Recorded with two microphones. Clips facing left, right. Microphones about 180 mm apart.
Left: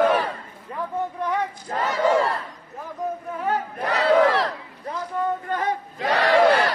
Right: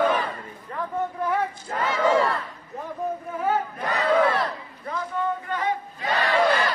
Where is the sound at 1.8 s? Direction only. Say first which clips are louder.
Left 1 dB; 40° left (ahead or behind).